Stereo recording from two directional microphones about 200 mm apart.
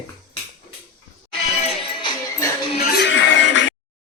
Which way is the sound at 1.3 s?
30° left (ahead or behind).